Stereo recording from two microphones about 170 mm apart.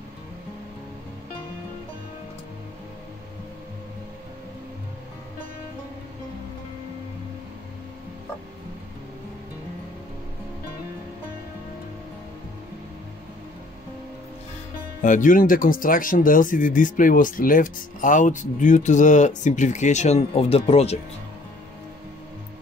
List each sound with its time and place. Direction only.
15.0 s speech: 50° left (ahead or behind)